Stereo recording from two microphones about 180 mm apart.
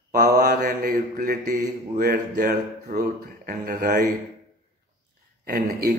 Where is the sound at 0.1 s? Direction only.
50° right (ahead or behind).